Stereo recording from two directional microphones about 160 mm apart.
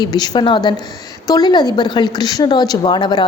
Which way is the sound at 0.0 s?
25° left (ahead or behind).